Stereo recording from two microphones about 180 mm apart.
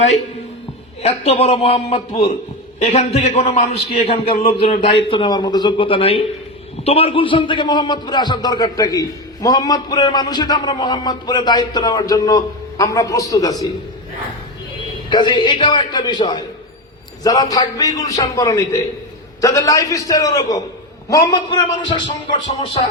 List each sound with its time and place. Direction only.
1.0 s a man's voice: 35° left (ahead or behind); by 13.7 s 20° left (ahead or behind)
15.1 s a man's voice: 25° left (ahead or behind)